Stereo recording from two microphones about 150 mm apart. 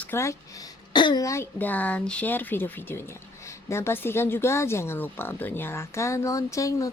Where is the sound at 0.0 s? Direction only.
15° left (ahead or behind).